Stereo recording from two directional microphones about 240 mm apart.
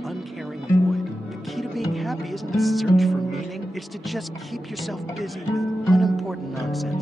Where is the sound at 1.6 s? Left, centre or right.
Centre.